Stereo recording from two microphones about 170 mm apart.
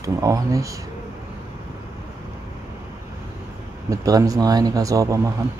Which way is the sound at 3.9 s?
20° right (ahead or behind).